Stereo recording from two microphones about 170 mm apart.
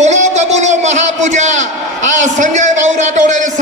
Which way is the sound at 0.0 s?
40° right (ahead or behind).